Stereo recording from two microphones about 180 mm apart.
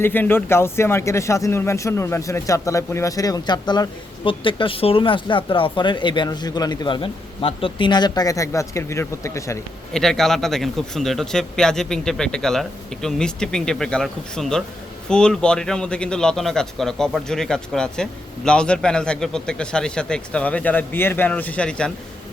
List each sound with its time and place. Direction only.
0.0 s speech: 10° left (ahead or behind)
9.9 s a man's voice: centre (ahead or behind)